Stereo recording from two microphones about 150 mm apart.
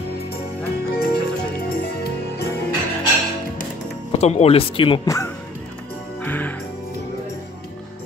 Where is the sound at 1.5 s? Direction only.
85° left.